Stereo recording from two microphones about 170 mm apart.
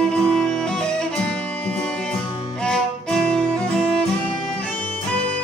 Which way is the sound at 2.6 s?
5° left (ahead or behind).